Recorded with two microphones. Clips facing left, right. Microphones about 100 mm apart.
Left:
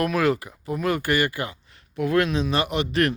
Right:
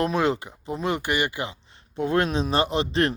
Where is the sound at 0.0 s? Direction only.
25° right (ahead or behind).